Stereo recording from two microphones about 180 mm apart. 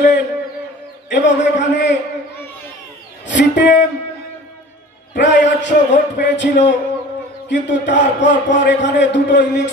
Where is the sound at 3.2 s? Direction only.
80° left.